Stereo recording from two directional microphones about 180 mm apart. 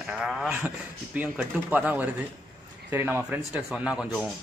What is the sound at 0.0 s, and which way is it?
Speech, 5° right (ahead or behind).